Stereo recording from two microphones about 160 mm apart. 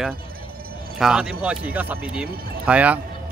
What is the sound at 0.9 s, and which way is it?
Speech, 5° right (ahead or behind).